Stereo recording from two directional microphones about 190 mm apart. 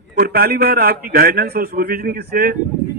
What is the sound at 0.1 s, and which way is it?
Speech, 50° right (ahead or behind).